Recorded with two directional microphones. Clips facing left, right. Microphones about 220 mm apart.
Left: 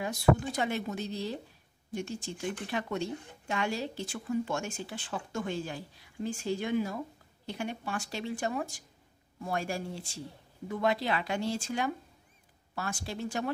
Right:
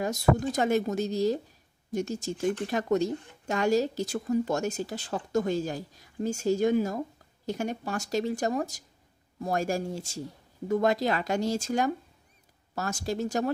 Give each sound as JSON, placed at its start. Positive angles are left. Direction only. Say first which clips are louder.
{"t": 0.0, "sound": "speech", "louder": "right 2 dB", "side_deg": -45}